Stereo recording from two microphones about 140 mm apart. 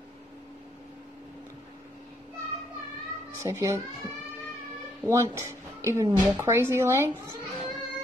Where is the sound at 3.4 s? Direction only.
20° right (ahead or behind).